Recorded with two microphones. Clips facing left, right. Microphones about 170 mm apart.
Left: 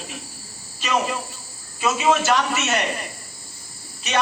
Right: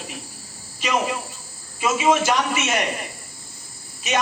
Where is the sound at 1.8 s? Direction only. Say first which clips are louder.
Even; 15° right (ahead or behind).